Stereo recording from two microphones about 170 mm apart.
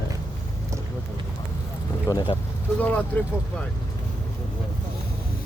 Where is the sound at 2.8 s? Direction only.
10° left (ahead or behind).